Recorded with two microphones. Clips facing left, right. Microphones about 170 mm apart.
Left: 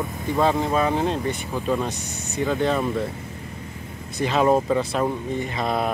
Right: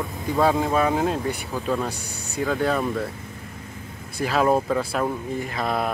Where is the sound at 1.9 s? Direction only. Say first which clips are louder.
Left 2 dB; 35° right (ahead or behind).